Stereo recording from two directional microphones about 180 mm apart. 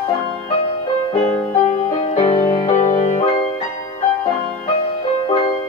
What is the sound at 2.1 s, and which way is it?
Music, 35° left (ahead or behind).